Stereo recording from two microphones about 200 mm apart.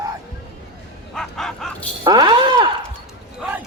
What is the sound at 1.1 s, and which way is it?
Bow-wow, centre (ahead or behind).